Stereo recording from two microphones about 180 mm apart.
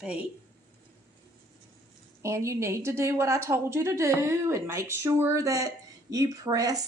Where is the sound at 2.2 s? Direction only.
15° right (ahead or behind).